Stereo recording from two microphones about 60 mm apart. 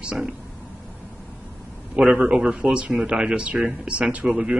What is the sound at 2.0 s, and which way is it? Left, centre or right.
A man's voice, centre.